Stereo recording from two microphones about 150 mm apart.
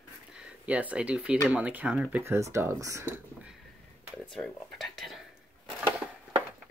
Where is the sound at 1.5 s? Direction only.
10° right (ahead or behind).